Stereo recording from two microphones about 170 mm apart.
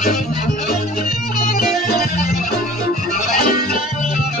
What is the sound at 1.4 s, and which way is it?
Music, 60° left (ahead or behind).